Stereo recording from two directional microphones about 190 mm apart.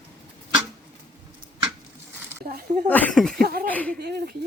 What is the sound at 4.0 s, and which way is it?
Speech, 55° right (ahead or behind).